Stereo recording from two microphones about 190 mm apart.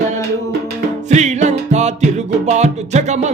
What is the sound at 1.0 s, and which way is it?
Music, 35° right (ahead or behind).